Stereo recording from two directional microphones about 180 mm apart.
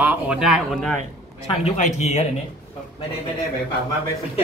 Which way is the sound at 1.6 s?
40° left (ahead or behind).